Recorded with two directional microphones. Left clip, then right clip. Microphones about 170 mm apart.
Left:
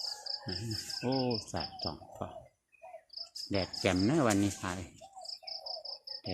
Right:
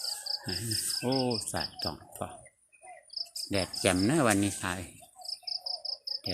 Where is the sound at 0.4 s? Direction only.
15° right (ahead or behind).